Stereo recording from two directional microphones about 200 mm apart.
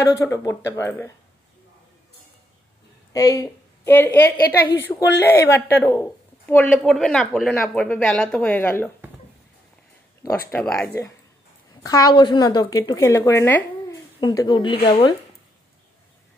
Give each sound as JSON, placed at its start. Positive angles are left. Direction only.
{"t": 0.1, "sound": "speech", "side_deg": 15}
{"t": 3.1, "sound": "a woman's voice", "side_deg": 15}
{"t": 10.5, "sound": "speech", "side_deg": 5}
{"t": 11.8, "sound": "a woman's voice", "side_deg": 20}